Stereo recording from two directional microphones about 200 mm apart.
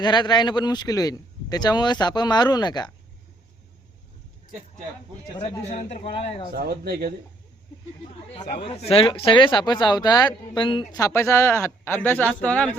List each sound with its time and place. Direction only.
0.0 s speech: 20° left (ahead or behind)
5.4 s speech: 35° left (ahead or behind)
6.5 s speech: 50° right (ahead or behind)
8.4 s speech: 35° left (ahead or behind); by 12.7 s 5° left (ahead or behind)